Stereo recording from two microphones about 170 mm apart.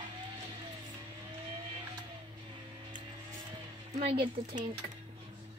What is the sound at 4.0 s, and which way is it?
Speech, 40° right (ahead or behind).